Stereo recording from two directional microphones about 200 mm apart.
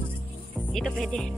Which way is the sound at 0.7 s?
Centre (ahead or behind).